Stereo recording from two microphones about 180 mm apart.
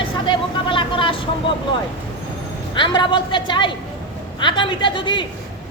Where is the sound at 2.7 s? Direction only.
25° left (ahead or behind).